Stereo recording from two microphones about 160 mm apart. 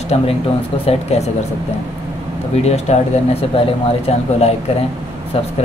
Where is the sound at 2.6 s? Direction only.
40° left (ahead or behind).